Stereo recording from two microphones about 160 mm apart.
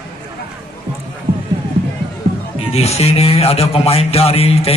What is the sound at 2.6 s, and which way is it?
Speech, 40° left (ahead or behind).